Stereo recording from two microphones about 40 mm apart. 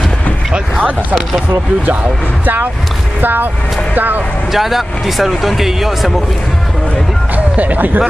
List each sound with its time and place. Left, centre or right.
2.4 s speech: right
4.5 s speech: centre
7.3 s speech: right